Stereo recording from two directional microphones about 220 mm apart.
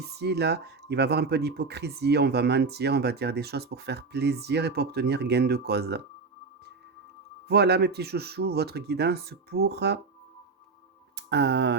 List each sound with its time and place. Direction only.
0.2 s speech: 50° right (ahead or behind)
7.4 s speech: 50° right (ahead or behind)
11.3 s speech: 50° right (ahead or behind)